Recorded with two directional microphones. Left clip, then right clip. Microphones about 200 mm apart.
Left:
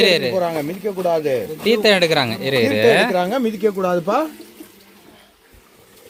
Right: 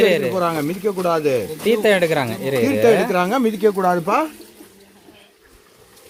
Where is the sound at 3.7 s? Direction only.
25° right (ahead or behind).